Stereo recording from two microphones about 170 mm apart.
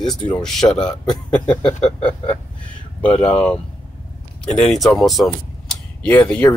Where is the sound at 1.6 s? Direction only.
35° left (ahead or behind).